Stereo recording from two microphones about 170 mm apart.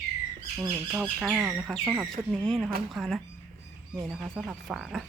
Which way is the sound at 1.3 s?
10° right (ahead or behind).